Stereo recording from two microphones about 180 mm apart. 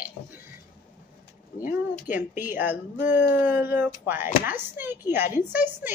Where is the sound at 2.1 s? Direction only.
10° right (ahead or behind).